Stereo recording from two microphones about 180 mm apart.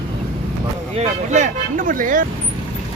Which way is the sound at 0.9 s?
40° right (ahead or behind).